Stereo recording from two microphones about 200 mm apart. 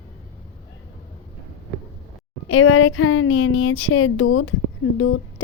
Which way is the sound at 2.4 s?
90° left.